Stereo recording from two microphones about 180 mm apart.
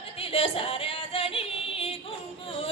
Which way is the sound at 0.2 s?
30° left (ahead or behind).